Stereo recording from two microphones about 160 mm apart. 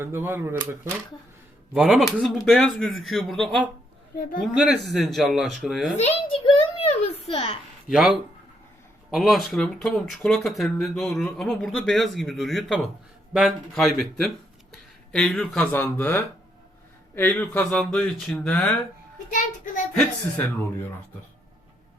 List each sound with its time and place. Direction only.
0.0 s speech: 15° right (ahead or behind)
1.7 s speech: centre (ahead or behind)
6.0 s a sound: 40° left (ahead or behind)
7.9 s speech: centre (ahead or behind)